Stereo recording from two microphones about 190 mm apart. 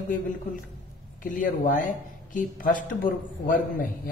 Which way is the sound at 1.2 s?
45° left (ahead or behind).